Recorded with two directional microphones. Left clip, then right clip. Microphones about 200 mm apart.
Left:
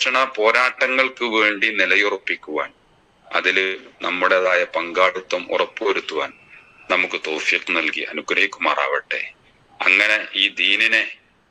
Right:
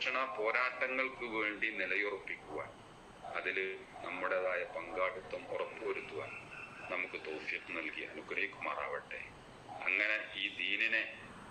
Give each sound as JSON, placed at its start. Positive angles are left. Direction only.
{"t": 0.0, "sound": "a man's voice", "side_deg": 55}